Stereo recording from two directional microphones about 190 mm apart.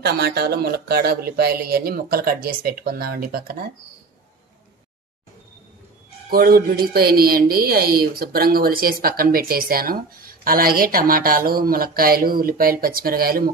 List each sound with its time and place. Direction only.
0.0 s speech: 60° right (ahead or behind)
6.0 s speech: 50° right (ahead or behind)